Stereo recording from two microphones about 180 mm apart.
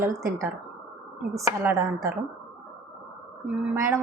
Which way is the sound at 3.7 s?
15° right (ahead or behind).